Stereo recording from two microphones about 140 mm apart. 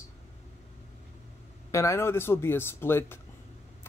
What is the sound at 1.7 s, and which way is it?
Speech, 20° left (ahead or behind).